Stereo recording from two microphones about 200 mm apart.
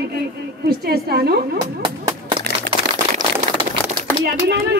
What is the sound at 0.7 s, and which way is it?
Speech, 50° right (ahead or behind).